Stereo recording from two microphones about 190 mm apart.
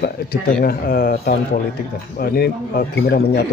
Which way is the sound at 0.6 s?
50° left (ahead or behind).